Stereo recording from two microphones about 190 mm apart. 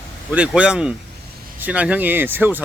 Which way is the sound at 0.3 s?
5° right (ahead or behind).